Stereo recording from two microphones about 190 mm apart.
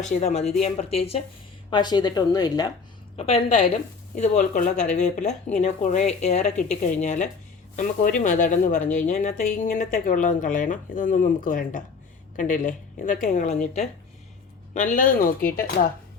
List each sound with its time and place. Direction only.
0.0 s a woman's voice: 40° left (ahead or behind); by 2.7 s 20° left (ahead or behind)
3.2 s a woman's voice: 35° left (ahead or behind); by 15.9 s 50° left (ahead or behind)